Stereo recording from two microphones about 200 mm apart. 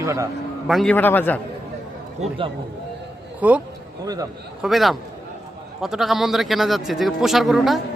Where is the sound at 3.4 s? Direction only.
5° right (ahead or behind).